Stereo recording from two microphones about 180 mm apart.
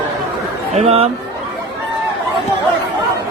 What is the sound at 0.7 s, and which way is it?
Speech, 35° right (ahead or behind).